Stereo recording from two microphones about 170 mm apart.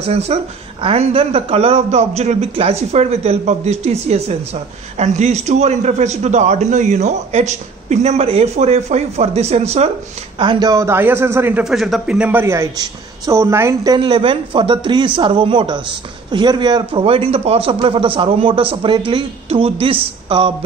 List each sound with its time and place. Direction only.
0.0 s a man's voice: 40° right (ahead or behind)
10.4 s a man's voice: 25° right (ahead or behind)
11.7 s a man's voice: centre (ahead or behind)
13.9 s a man's voice: 30° right (ahead or behind)